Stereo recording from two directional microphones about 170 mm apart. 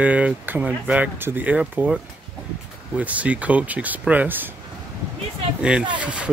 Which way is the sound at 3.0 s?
10° right (ahead or behind).